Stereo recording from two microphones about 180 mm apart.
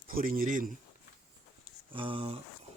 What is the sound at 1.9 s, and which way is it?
Speech, 30° right (ahead or behind).